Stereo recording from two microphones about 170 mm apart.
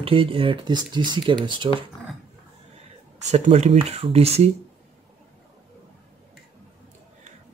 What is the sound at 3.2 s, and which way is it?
Speech, 40° right (ahead or behind).